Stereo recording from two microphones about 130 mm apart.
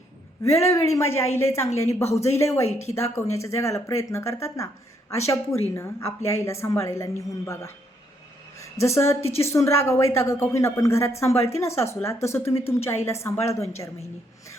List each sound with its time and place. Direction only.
0.4 s a woman's voice: 20° left (ahead or behind)